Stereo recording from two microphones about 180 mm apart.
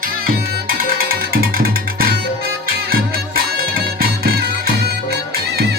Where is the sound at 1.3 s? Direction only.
55° right (ahead or behind).